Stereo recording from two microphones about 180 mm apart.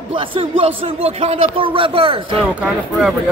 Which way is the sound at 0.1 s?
30° right (ahead or behind).